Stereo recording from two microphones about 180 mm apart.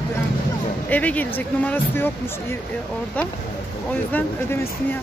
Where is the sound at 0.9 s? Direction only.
10° left (ahead or behind).